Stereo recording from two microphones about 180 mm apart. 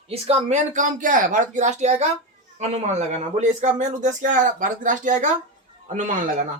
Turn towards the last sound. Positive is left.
turn(degrees=-45)  # may be behind; listen again after turning